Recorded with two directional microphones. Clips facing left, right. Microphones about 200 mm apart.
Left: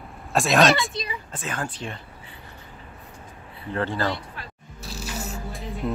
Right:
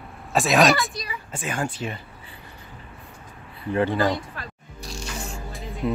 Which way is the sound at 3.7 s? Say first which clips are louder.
Right 4 dB; 15° right (ahead or behind).